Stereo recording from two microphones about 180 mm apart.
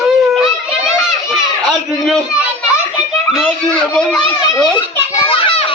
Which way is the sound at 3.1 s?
Centre (ahead or behind).